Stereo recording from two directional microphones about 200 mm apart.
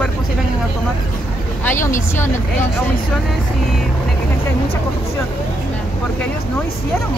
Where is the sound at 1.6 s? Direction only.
10° left (ahead or behind).